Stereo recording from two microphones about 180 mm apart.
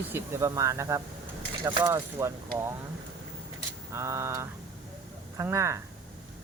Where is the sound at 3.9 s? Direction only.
15° right (ahead or behind).